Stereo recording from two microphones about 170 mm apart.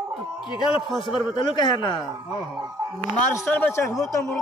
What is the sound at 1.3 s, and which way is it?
Speech, 25° left (ahead or behind).